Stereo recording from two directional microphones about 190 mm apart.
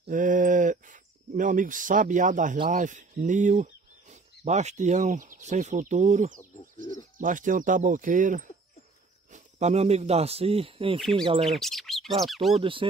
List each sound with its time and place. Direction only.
0.0 s a sound: 45° right (ahead or behind)
2.7 s speech: 40° right (ahead or behind)
11.0 s speech: centre (ahead or behind)
12.5 s speech: 25° right (ahead or behind)